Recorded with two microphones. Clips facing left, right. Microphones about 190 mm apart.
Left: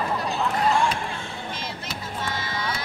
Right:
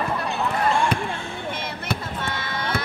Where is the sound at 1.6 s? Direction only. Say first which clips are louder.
Right 5 dB; 60° right (ahead or behind).